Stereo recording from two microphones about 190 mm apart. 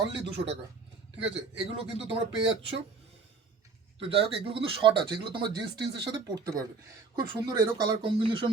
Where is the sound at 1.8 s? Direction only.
30° right (ahead or behind).